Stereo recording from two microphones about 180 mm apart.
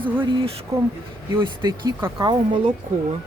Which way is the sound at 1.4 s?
25° right (ahead or behind).